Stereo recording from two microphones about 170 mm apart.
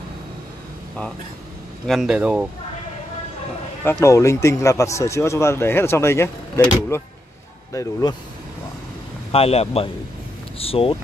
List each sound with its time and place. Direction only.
1.9 s speech: 5° right (ahead or behind)
4.0 s speech: 20° left (ahead or behind)
9.3 s speech: 35° left (ahead or behind)